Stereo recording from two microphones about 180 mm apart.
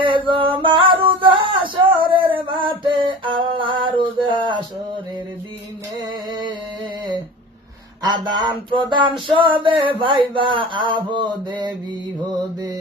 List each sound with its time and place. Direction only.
0.3 s music: 30° right (ahead or behind)
1.3 s male singing: 30° right (ahead or behind)
6.0 s music: 25° right (ahead or behind)
8.0 s speech: 25° right (ahead or behind)